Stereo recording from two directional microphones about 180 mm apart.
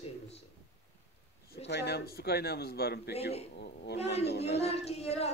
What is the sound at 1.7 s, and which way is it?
A man's voice, 65° left (ahead or behind).